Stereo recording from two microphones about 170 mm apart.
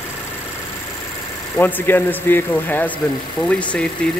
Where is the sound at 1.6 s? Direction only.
10° left (ahead or behind).